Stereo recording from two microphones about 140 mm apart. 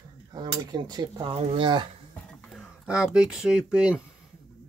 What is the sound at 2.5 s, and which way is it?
Speech, 5° right (ahead or behind).